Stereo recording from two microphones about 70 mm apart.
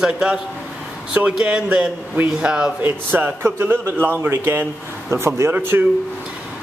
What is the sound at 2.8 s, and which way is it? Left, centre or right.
A man's voice, right.